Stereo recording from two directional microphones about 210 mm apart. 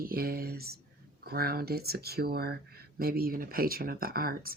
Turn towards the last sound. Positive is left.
turn(degrees=-45)  # may be behind; listen again after turning